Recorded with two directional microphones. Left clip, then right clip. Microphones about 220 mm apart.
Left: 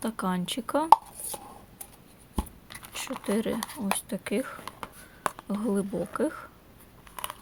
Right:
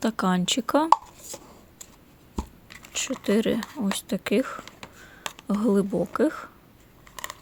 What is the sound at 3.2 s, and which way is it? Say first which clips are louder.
Speech: right 5 dB; 30° right (ahead or behind).